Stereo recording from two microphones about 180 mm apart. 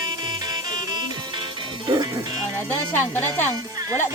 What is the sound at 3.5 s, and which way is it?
Speech, 20° right (ahead or behind).